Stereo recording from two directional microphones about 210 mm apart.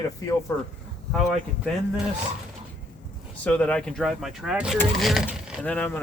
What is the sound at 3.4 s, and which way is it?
Speech, 5° left (ahead or behind).